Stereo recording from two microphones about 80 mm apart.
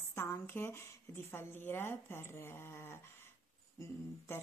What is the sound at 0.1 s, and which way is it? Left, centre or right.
Speech, left.